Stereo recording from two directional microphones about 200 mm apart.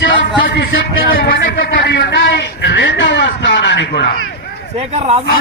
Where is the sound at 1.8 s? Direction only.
60° left (ahead or behind).